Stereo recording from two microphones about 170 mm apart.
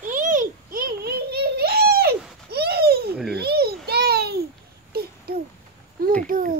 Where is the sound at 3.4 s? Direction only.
70° right (ahead or behind).